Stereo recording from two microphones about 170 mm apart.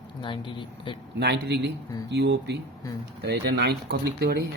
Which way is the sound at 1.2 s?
75° right (ahead or behind).